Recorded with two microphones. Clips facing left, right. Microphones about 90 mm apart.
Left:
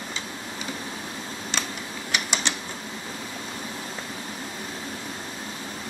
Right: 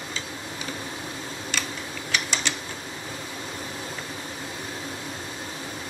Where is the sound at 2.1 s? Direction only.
20° left (ahead or behind).